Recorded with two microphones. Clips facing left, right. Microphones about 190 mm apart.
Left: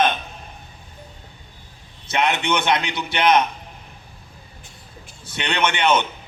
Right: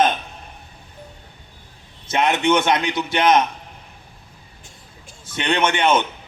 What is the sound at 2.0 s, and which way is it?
A man's voice, 45° right (ahead or behind).